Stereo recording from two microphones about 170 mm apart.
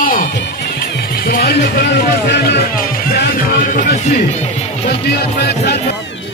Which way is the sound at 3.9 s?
40° left (ahead or behind).